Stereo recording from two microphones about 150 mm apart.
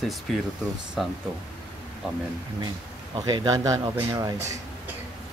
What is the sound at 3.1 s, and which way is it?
A man's voice, 25° right (ahead or behind).